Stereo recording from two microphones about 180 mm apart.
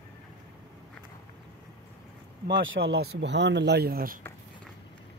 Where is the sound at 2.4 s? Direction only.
85° right; by 4.2 s 55° right (ahead or behind).